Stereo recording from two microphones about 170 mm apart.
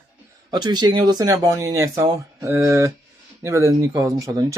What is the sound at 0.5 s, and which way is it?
Speech, 25° right (ahead or behind).